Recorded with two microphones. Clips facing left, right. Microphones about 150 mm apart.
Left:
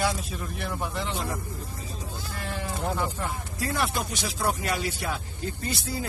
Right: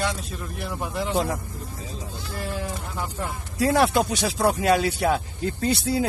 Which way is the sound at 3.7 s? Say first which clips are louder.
Right 8 dB; 70° right (ahead or behind).